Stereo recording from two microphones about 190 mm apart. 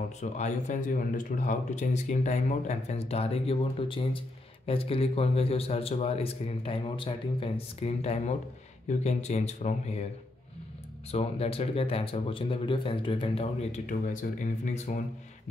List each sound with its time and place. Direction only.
0.2 s speech: 40° left (ahead or behind)
11.1 s speech: 35° left (ahead or behind)